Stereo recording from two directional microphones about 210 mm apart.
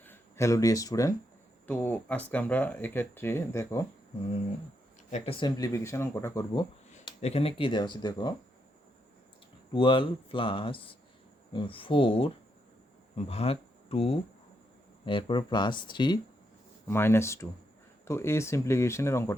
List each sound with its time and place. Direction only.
0.0 s speech: 10° left (ahead or behind)
5.1 s speech: 25° left (ahead or behind)
7.0 s speech: 30° left (ahead or behind)
9.7 s speech: 25° left (ahead or behind)